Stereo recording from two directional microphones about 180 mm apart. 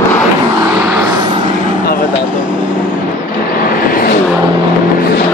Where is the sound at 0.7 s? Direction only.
10° right (ahead or behind).